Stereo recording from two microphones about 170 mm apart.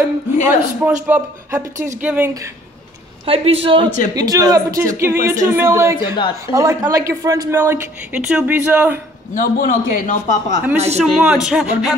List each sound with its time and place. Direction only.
0.0 s a woman's voice: 15° right (ahead or behind)
3.3 s a man's voice: 35° right (ahead or behind)
4.1 s a woman's voice: 20° right (ahead or behind)
5.9 s speech: 30° left (ahead or behind)
6.4 s a woman's voice: 20° right (ahead or behind)
9.3 s a man's voice: 50° left (ahead or behind)
11.4 s music: 5° right (ahead or behind)